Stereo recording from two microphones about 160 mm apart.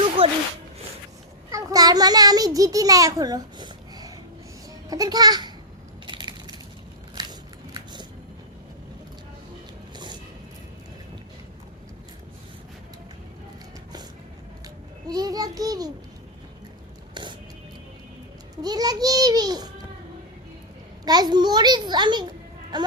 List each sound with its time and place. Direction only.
0.2 s a sound: 35° right (ahead or behind)
1.5 s a child's voice: 20° right (ahead or behind)
6.1 s crushing: 30° right (ahead or behind)
7.2 s biting: 25° right (ahead or behind)
15.0 s child singing: 25° right (ahead or behind)
18.5 s a sound: 25° right (ahead or behind)
21.0 s a child's voice: 25° right (ahead or behind)